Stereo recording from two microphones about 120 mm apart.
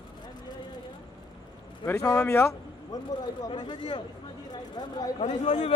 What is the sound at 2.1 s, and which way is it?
Speech, 20° left (ahead or behind).